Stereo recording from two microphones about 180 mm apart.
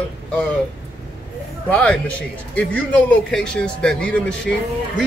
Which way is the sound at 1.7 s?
5° left (ahead or behind).